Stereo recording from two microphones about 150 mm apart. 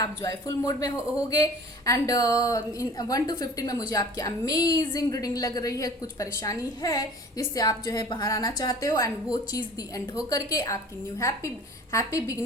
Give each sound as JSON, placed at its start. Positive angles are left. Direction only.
{"t": 0.0, "sound": "speech", "side_deg": 20}